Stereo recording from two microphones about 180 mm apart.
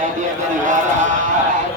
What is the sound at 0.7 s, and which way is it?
Speech, 45° right (ahead or behind).